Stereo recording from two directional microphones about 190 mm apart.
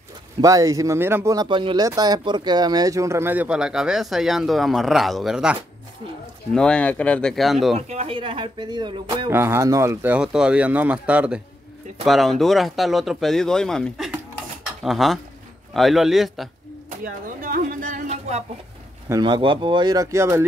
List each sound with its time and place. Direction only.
0.4 s speech: 15° right (ahead or behind); by 7.7 s centre (ahead or behind)
7.7 s speech: 35° right (ahead or behind)
9.3 s speech: 10° right (ahead or behind)
17.0 s a sound: 50° right (ahead or behind)
19.0 s speech: 20° right (ahead or behind)